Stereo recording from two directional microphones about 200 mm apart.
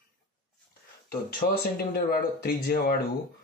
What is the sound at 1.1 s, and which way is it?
Speech, 50° left (ahead or behind).